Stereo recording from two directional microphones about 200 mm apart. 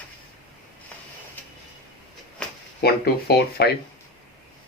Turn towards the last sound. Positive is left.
turn(degrees=50)  # may be behind; listen again after turning